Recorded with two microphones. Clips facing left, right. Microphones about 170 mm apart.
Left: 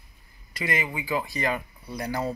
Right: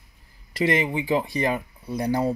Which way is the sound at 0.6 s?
30° right (ahead or behind).